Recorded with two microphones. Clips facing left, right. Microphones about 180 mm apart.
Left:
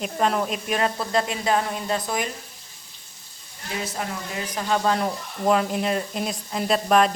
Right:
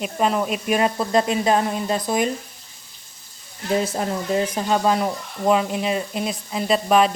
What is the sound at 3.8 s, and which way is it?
Speech, 30° right (ahead or behind).